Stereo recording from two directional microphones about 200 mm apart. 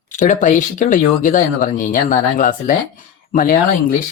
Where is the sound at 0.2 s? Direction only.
40° left (ahead or behind).